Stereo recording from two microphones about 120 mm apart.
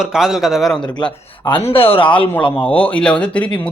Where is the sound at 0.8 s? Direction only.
40° left (ahead or behind).